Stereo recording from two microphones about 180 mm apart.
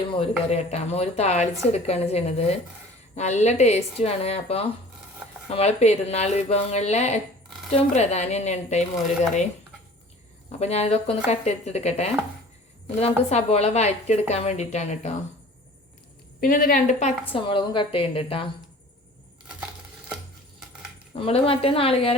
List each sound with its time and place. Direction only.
0.1 s speech: 35° left (ahead or behind)
10.6 s speech: 35° left (ahead or behind)
16.4 s a woman's voice: 55° left (ahead or behind)
17.3 s a woman's voice: 25° left (ahead or behind)
21.2 s speech: 30° left (ahead or behind)